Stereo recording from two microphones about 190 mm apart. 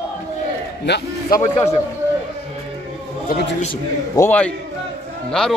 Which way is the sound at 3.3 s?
60° left (ahead or behind).